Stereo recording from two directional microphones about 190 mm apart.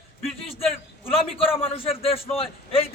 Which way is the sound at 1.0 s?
30° left (ahead or behind).